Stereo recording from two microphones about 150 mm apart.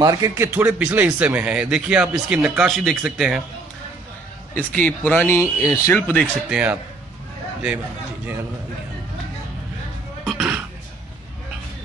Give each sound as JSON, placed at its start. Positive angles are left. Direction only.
{"t": 0.0, "sound": "speech", "side_deg": -25}
{"t": 0.5, "sound": "speech", "side_deg": -10}
{"t": 4.6, "sound": "speech", "side_deg": 10}
{"t": 6.5, "sound": "speech", "side_deg": -10}
{"t": 10.2, "sound": "throat clearing", "side_deg": -5}